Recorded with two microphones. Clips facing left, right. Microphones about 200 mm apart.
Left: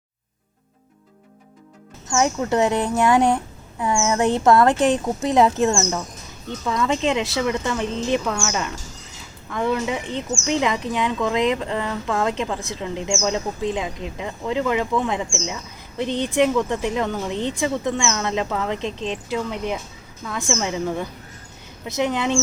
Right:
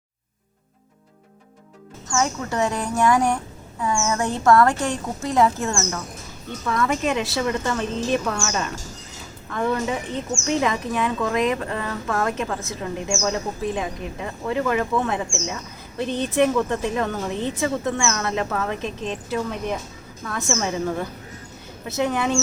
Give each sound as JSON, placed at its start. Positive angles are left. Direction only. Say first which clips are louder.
{"t": 2.0, "sound": "a woman's voice", "louder": "left 4 dB", "side_deg": 20}